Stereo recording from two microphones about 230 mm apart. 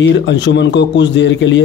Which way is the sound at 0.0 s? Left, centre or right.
Left.